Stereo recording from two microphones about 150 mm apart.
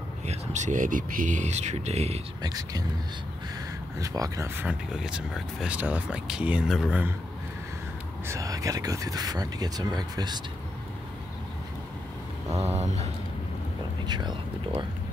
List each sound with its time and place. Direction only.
0.3 s speech: 55° right (ahead or behind)
2.4 s speech: 25° right (ahead or behind)
4.0 s speech: 25° right (ahead or behind)
4.6 s speech: 5° right (ahead or behind)
8.3 s speech: 20° right (ahead or behind)
12.6 s speech: 50° right (ahead or behind)
14.0 s speech: 30° right (ahead or behind)